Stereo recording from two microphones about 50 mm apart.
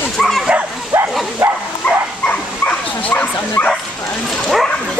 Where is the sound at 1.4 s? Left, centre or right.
Right.